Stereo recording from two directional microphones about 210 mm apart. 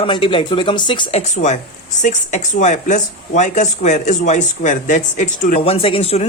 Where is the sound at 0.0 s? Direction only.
25° left (ahead or behind).